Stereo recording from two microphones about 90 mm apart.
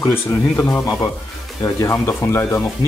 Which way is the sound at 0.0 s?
30° left (ahead or behind).